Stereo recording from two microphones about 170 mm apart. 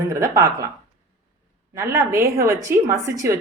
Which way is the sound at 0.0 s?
20° right (ahead or behind).